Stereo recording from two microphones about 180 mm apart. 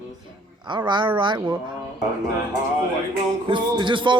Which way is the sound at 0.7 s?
25° right (ahead or behind).